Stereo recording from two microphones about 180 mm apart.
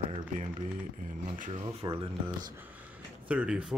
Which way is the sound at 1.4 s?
35° right (ahead or behind).